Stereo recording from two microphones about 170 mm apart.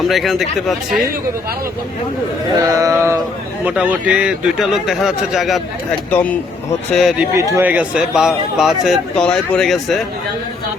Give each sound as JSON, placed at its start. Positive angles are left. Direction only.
{"t": 0.1, "sound": "a man's voice", "side_deg": 0}
{"t": 2.6, "sound": "a man's voice", "side_deg": -20}
{"t": 6.1, "sound": "speech", "side_deg": 10}
{"t": 6.9, "sound": "a man's voice", "side_deg": 0}
{"t": 7.3, "sound": "a man's voice", "side_deg": -15}